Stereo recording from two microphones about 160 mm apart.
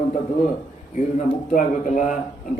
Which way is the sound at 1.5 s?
50° left (ahead or behind).